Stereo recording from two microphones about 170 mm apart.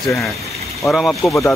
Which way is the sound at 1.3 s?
15° left (ahead or behind).